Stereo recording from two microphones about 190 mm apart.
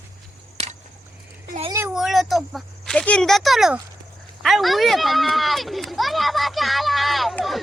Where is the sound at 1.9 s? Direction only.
Centre (ahead or behind).